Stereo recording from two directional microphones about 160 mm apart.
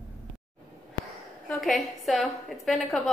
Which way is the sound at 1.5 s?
Centre (ahead or behind).